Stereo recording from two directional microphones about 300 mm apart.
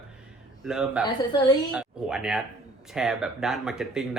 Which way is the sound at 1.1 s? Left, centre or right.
Centre.